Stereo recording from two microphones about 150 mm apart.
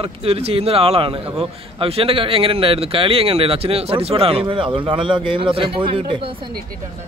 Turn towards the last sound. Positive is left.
turn(degrees=-35)  # may be behind; listen again after turning